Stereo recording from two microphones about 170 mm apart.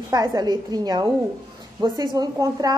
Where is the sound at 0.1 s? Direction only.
20° right (ahead or behind).